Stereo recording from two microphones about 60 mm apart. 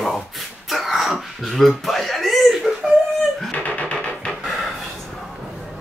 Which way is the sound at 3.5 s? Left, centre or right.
Left.